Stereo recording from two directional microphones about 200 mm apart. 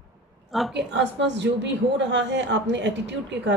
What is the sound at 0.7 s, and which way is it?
A woman's voice, 60° right (ahead or behind).